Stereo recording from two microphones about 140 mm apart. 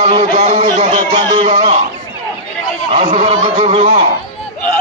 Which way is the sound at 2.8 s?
45° right (ahead or behind).